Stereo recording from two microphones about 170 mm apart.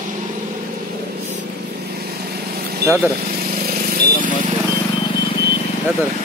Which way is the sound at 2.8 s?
70° right (ahead or behind).